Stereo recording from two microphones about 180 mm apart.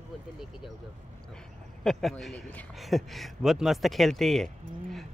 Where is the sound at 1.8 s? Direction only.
Centre (ahead or behind).